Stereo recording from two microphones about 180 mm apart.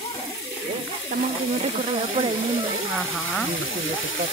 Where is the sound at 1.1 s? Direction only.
40° right (ahead or behind).